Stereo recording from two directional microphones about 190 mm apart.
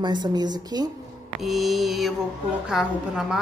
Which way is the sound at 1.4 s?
Centre (ahead or behind).